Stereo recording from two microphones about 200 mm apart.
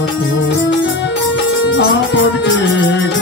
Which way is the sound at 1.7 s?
65° left (ahead or behind).